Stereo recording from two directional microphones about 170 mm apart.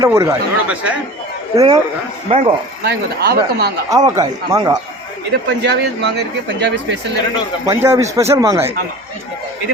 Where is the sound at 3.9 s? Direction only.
20° right (ahead or behind).